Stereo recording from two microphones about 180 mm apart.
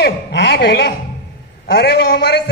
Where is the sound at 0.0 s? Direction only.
70° left (ahead or behind).